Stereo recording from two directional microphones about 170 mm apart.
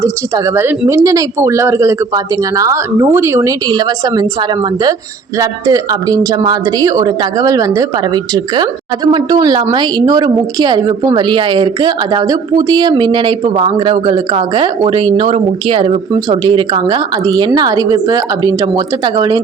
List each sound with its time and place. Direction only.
0.0 s a woman's voice: 15° right (ahead or behind)